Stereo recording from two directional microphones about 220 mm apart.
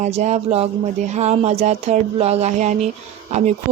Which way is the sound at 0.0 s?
30° right (ahead or behind).